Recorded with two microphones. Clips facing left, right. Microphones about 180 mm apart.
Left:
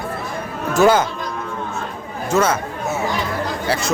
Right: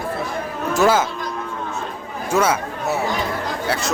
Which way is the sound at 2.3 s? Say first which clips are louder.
Left 1 dB; 10° right (ahead or behind).